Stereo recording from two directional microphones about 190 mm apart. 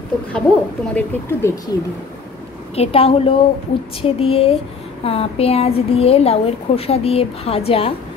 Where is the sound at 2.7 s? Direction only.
30° left (ahead or behind).